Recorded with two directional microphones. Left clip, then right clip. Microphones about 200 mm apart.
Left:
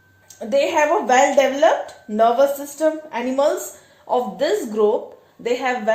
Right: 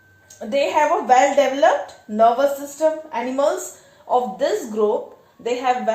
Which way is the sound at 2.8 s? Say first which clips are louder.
Right 1 dB; 40° left (ahead or behind).